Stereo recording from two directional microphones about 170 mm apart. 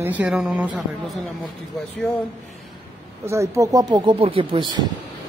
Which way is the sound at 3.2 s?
15° right (ahead or behind).